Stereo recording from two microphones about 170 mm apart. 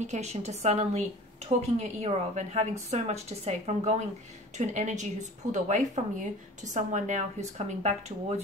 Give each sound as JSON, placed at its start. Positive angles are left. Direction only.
{"t": 0.0, "sound": "a woman's voice", "side_deg": -40}